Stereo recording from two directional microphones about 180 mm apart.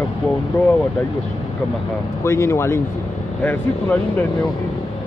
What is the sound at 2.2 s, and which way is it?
Speech, 15° left (ahead or behind).